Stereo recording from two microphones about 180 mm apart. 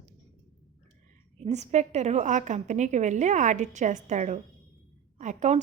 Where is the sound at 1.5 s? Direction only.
40° right (ahead or behind).